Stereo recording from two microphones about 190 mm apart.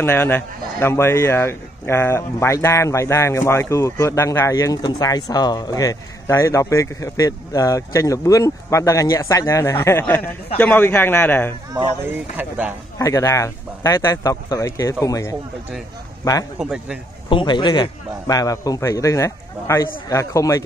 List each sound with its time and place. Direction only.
0.0 s speech: 10° left (ahead or behind)
12.4 s speech: 10° right (ahead or behind)
13.0 s speech: 15° left (ahead or behind)
16.5 s a man's voice: 5° right (ahead or behind)
17.3 s speech: 25° left (ahead or behind)